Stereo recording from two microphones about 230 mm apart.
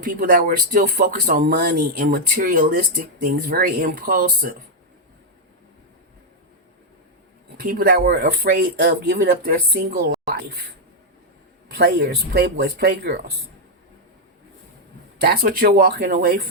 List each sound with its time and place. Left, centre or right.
0.0 s speech: right
7.5 s speech: right
11.7 s speech: right
15.2 s speech: right